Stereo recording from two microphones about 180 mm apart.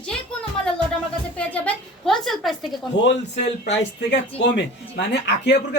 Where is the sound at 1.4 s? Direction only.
10° left (ahead or behind).